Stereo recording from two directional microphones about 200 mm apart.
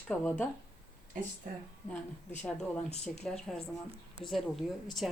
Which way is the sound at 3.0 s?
5° left (ahead or behind).